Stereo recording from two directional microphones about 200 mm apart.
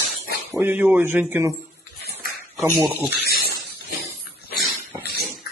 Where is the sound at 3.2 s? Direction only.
50° left (ahead or behind).